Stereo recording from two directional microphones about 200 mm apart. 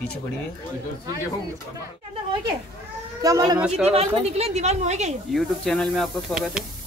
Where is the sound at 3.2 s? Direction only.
20° right (ahead or behind).